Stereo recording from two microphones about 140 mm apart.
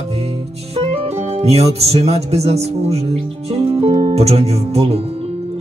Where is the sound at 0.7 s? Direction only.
45° right (ahead or behind).